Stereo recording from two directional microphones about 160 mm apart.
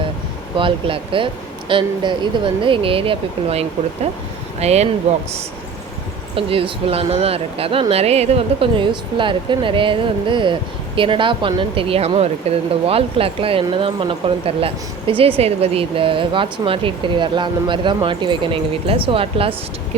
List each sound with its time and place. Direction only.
0.5 s speech: 35° right (ahead or behind)
6.3 s speech: 35° right (ahead or behind)